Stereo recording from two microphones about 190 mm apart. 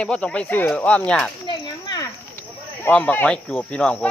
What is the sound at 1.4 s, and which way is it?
Snake, 25° left (ahead or behind).